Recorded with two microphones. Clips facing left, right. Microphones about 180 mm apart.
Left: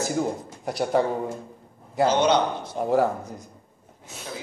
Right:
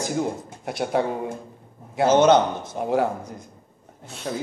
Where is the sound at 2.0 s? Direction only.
50° right (ahead or behind).